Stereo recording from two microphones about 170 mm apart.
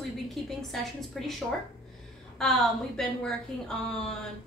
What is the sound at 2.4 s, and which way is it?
A woman's voice, centre (ahead or behind).